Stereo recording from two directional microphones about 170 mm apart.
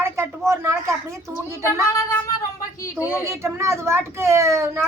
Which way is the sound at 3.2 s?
15° right (ahead or behind).